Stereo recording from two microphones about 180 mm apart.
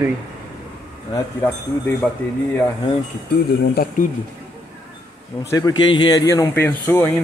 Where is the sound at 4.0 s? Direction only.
45° left (ahead or behind).